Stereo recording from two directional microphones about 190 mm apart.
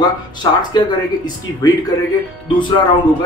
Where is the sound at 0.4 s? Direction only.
25° left (ahead or behind).